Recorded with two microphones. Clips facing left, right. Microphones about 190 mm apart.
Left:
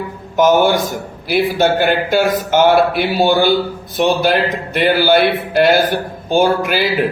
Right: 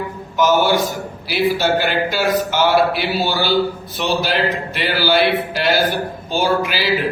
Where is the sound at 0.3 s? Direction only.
50° left (ahead or behind).